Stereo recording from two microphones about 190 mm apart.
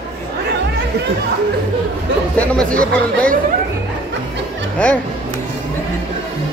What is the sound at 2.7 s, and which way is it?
Speech, 50° right (ahead or behind).